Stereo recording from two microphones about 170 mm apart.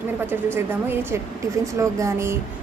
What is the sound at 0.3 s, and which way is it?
A woman's voice, 10° right (ahead or behind).